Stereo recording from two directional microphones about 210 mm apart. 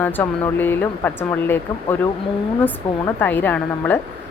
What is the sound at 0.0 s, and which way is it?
Speech, 10° left (ahead or behind).